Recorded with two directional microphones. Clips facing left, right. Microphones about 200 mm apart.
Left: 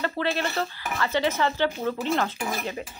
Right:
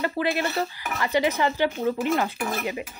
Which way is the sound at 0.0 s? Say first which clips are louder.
Right 2 dB; 10° right (ahead or behind).